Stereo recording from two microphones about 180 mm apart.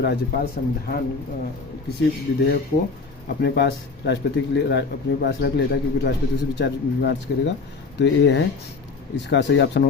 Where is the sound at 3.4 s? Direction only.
70° left (ahead or behind).